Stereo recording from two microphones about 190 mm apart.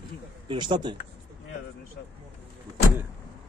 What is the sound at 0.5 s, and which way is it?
Speech, 25° right (ahead or behind).